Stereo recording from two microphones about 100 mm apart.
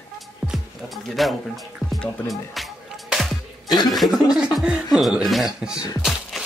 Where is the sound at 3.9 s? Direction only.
Centre (ahead or behind).